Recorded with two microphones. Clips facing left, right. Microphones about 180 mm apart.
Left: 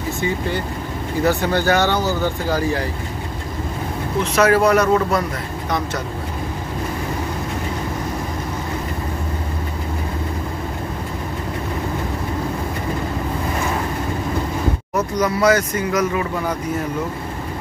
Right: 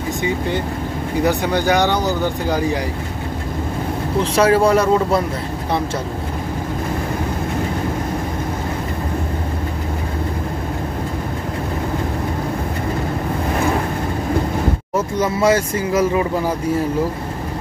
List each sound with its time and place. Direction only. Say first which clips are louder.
1.2 s speech: even; 15° right (ahead or behind)
4.2 s speech: right 1 dB; 30° right (ahead or behind)
15.0 s speech: even; 25° right (ahead or behind)